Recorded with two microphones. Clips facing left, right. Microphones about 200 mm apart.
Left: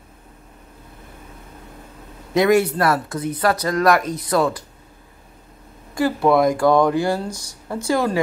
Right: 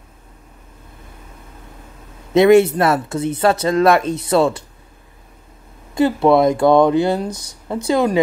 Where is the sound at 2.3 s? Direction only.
25° right (ahead or behind).